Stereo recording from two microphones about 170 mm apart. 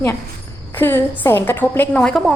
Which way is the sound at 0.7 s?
10° left (ahead or behind).